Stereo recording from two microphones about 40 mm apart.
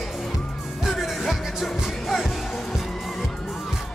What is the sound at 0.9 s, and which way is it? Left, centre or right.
Music, centre.